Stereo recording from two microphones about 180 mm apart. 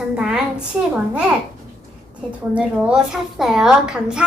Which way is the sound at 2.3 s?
5° right (ahead or behind).